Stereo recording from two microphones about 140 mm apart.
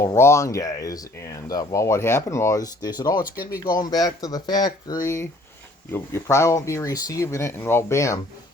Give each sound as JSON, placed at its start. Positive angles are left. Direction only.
{"t": 0.0, "sound": "speech", "side_deg": 20}